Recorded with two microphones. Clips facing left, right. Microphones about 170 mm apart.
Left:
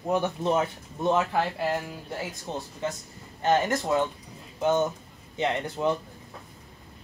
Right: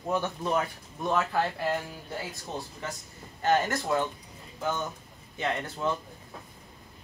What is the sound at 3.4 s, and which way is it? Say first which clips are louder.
Speech: left 2 dB; 20° left (ahead or behind).